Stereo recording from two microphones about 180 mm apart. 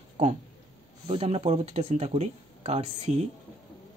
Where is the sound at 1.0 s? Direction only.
35° right (ahead or behind).